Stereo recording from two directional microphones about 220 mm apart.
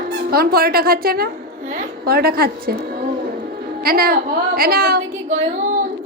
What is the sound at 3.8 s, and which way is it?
A woman's voice, 45° right (ahead or behind).